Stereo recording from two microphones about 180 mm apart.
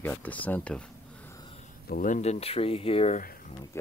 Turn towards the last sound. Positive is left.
turn(degrees=35)  # may be behind; listen again after turning